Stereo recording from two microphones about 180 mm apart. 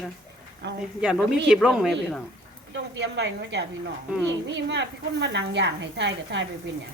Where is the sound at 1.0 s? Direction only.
5° right (ahead or behind).